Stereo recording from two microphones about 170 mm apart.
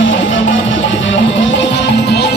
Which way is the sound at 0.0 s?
90° left.